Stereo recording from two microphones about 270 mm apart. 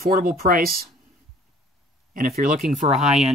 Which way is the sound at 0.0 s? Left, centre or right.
Right.